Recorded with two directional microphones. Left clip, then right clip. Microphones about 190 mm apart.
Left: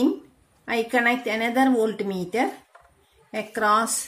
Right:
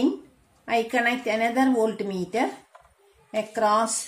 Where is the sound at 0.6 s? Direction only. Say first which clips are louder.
Left 1 dB; 30° left (ahead or behind).